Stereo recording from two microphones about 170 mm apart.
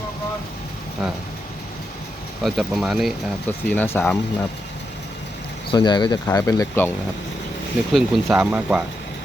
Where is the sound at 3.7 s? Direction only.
10° left (ahead or behind).